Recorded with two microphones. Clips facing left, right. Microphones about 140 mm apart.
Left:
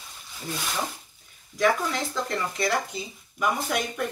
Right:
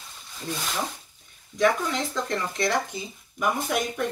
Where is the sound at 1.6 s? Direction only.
5° left (ahead or behind).